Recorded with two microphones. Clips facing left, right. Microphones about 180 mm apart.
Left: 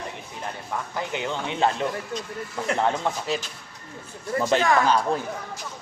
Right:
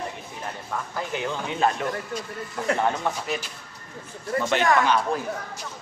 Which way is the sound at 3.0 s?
30° left (ahead or behind).